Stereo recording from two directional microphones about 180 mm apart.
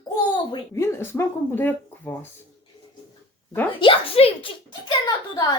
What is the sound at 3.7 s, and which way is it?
A woman's voice, 30° left (ahead or behind).